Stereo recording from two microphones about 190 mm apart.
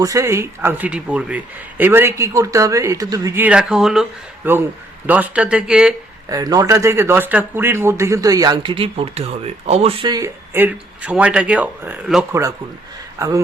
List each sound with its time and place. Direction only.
0.0 s speech: 15° right (ahead or behind)
6.2 s speech: 20° right (ahead or behind)
12.3 s speech: 15° right (ahead or behind)